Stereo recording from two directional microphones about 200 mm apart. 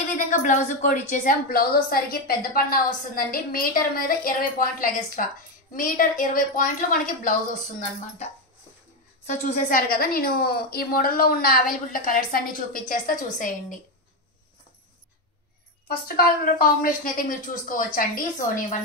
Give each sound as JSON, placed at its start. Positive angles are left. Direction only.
{"t": 0.1, "sound": "a woman's voice", "side_deg": 35}
{"t": 9.2, "sound": "a woman's voice", "side_deg": 35}
{"t": 16.1, "sound": "a woman's voice", "side_deg": 45}